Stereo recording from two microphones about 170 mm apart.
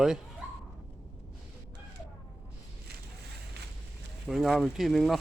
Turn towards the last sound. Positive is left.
turn(degrees=0)  # may be behind; listen again after turning